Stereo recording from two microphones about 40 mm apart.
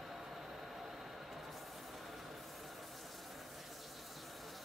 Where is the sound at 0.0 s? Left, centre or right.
Centre.